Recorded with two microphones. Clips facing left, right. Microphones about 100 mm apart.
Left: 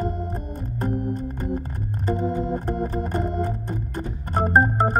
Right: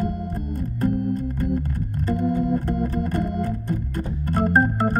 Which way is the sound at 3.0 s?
30° left (ahead or behind).